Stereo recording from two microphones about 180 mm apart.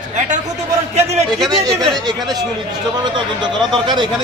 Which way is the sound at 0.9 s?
35° right (ahead or behind).